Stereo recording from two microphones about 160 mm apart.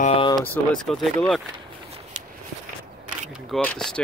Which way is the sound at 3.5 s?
5° left (ahead or behind).